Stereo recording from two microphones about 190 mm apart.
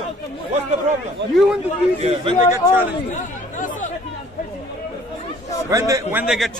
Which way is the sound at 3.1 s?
40° left (ahead or behind).